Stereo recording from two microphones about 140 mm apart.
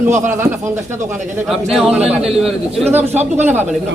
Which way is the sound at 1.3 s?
5° right (ahead or behind).